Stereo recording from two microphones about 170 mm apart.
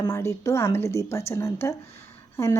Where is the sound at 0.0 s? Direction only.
20° left (ahead or behind).